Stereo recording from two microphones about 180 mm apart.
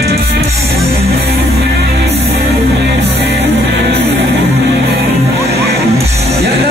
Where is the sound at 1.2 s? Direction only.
65° right (ahead or behind).